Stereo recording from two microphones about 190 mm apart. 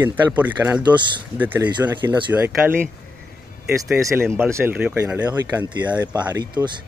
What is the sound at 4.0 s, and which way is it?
Speech, 15° right (ahead or behind).